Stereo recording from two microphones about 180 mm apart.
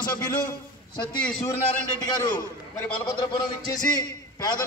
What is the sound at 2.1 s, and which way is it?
A man's voice, 20° left (ahead or behind).